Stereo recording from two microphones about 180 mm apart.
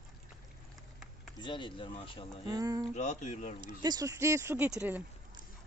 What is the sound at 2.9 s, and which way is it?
Speech, 40° left (ahead or behind).